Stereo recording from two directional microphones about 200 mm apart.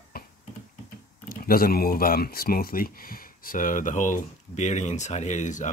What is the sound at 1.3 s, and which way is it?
Speech, 45° left (ahead or behind).